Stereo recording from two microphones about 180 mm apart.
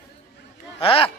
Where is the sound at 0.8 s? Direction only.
30° left (ahead or behind).